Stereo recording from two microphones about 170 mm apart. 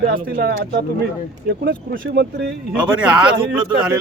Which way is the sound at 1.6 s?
65° right (ahead or behind).